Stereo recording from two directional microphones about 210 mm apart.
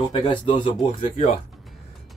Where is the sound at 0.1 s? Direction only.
20° left (ahead or behind).